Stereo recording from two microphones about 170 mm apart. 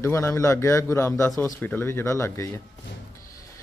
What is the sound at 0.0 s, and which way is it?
Speech, 15° left (ahead or behind).